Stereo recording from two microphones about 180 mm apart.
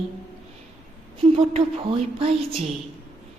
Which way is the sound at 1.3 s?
30° right (ahead or behind).